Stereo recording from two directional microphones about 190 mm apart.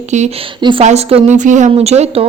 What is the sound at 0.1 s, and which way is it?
Speech, 40° right (ahead or behind).